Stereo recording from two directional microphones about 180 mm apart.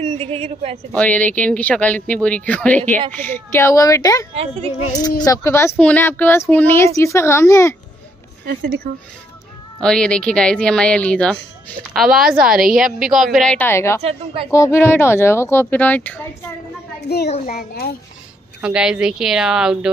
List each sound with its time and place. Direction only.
0.0 s speech: 35° right (ahead or behind)
0.9 s speech: 5° left (ahead or behind)
4.3 s a woman's voice: 30° right (ahead or behind)
5.2 s speech: 15° left (ahead or behind)
8.5 s speech: 60° right (ahead or behind)
9.8 s speech: 5° left (ahead or behind)
14.0 s a woman's voice: 30° right (ahead or behind)
14.5 s speech: 15° left (ahead or behind)
17.1 s a child's voice: 65° left (ahead or behind)
18.6 s speech: 5° right (ahead or behind)